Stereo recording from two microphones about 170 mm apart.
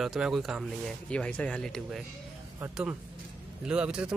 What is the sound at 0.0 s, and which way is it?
Speech, centre (ahead or behind).